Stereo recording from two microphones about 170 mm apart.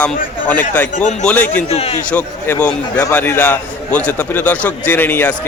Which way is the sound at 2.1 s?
10° left (ahead or behind).